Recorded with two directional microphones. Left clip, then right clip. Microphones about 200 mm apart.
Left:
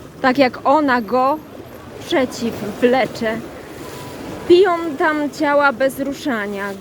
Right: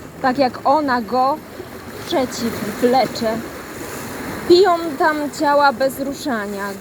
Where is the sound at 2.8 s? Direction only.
15° left (ahead or behind).